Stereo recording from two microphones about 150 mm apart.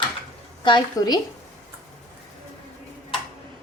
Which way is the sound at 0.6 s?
30° left (ahead or behind).